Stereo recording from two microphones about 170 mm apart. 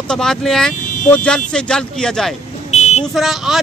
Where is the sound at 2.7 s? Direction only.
40° left (ahead or behind).